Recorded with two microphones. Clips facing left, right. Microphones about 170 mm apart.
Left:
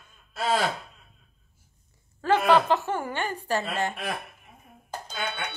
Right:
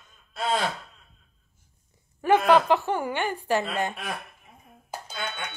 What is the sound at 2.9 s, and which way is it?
A woman's voice, 15° right (ahead or behind).